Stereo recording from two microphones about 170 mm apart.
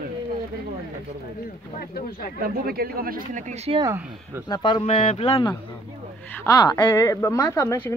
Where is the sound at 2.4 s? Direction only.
60° right (ahead or behind).